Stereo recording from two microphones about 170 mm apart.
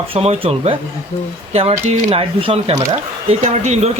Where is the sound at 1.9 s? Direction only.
35° right (ahead or behind).